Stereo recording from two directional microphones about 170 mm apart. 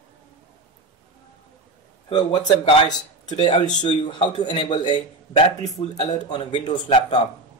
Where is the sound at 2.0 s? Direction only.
30° left (ahead or behind).